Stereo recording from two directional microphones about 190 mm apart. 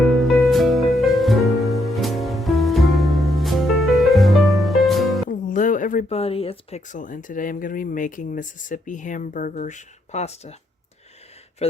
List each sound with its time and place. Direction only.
0.5 s music: centre (ahead or behind)
5.3 s speech: 45° left (ahead or behind)
11.6 s speech: 35° left (ahead or behind)